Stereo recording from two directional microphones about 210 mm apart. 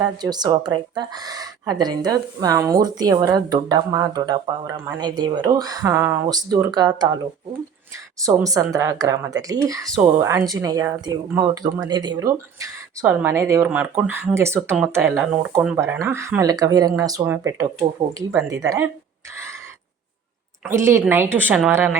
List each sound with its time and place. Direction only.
0.0 s a woman's voice: 20° right (ahead or behind)
8.2 s a woman's voice: 15° right (ahead or behind)
20.7 s a woman's voice: 10° right (ahead or behind)